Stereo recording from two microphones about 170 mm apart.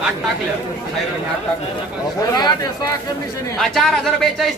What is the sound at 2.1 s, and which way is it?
Speech, 25° left (ahead or behind).